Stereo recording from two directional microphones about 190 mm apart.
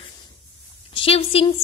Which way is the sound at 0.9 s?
30° left (ahead or behind).